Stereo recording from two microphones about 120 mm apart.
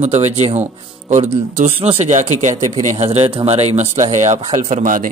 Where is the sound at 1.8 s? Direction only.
55° right (ahead or behind).